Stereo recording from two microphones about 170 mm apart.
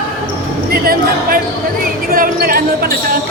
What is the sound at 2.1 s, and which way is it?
Speech, 60° right (ahead or behind).